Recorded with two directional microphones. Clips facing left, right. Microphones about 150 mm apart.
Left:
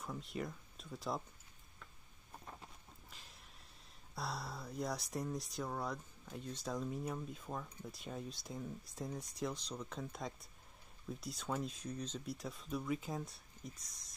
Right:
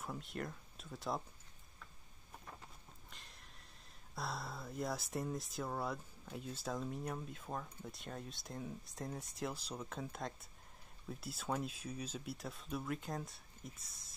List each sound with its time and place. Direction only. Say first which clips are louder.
0.0 s speech: left 1 dB; centre (ahead or behind)
3.1 s sniff: even; centre (ahead or behind)
4.1 s speech: even; centre (ahead or behind)